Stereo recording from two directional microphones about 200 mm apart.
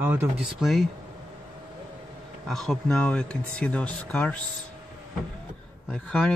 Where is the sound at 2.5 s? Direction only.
Centre (ahead or behind).